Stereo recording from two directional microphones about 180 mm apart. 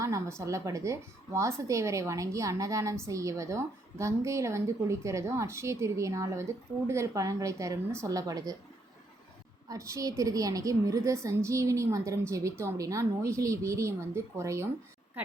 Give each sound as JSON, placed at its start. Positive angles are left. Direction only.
{"t": 0.0, "sound": "a woman's voice", "side_deg": -15}
{"t": 9.6, "sound": "a woman's voice", "side_deg": -15}